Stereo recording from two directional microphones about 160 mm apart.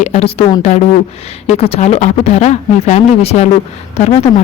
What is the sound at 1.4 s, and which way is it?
Speech, 40° left (ahead or behind).